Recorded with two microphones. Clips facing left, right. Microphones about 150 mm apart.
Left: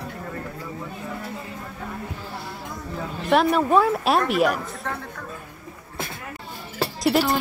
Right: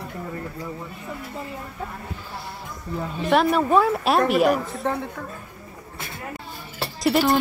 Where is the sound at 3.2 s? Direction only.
Centre (ahead or behind).